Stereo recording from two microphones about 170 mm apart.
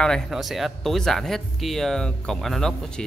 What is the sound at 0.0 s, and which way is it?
Speech, centre (ahead or behind).